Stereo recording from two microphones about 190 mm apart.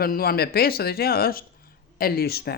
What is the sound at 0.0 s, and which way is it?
Speech, 50° left (ahead or behind).